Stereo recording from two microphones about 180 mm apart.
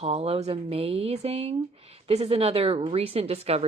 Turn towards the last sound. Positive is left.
turn(degrees=-35)  # may be behind; listen again after turning